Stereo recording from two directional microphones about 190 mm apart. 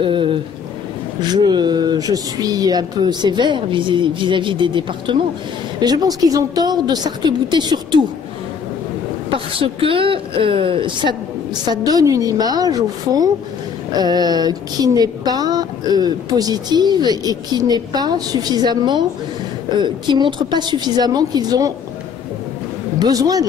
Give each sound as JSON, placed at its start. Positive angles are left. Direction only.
{"t": 0.0, "sound": "a sound", "side_deg": -25}
{"t": 1.2, "sound": "speech", "side_deg": -20}
{"t": 9.6, "sound": "speech", "side_deg": -30}
{"t": 22.9, "sound": "speech", "side_deg": -20}